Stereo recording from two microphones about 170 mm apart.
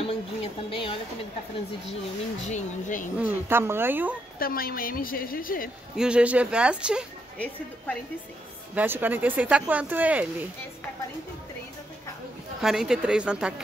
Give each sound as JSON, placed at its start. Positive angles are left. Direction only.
{"t": 0.0, "sound": "speech", "side_deg": 35}
{"t": 2.4, "sound": "speech", "side_deg": 45}
{"t": 3.2, "sound": "speech", "side_deg": -10}
{"t": 4.4, "sound": "a woman's voice", "side_deg": 60}
{"t": 5.9, "sound": "speech", "side_deg": -5}
{"t": 7.3, "sound": "a woman's voice", "side_deg": 10}
{"t": 8.7, "sound": "speech", "side_deg": -10}
{"t": 12.6, "sound": "speech", "side_deg": -5}